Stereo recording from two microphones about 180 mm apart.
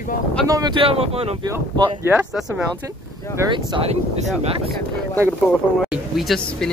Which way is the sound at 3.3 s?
25° right (ahead or behind).